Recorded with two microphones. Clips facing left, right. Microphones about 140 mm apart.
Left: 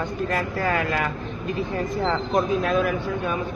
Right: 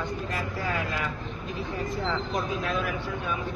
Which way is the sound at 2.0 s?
55° left (ahead or behind).